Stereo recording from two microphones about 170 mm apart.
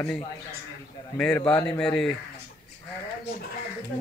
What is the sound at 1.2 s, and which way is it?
Speech, 5° left (ahead or behind).